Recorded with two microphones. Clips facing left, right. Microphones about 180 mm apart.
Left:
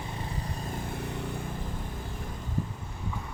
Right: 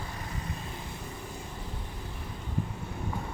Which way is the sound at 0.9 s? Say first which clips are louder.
Left 6 dB; 65° left (ahead or behind).